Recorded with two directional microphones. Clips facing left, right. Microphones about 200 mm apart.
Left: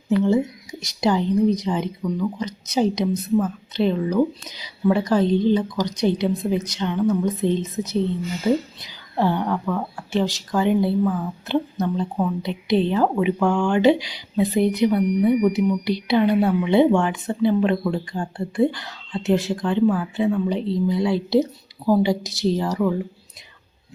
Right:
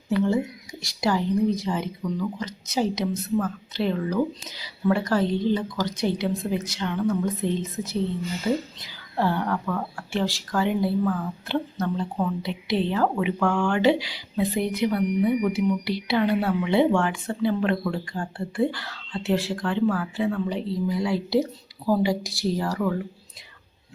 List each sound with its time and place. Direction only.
0.3 s speech: 20° left (ahead or behind)